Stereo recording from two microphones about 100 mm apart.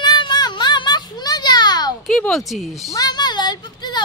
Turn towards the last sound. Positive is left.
turn(degrees=45)  # may be behind; listen again after turning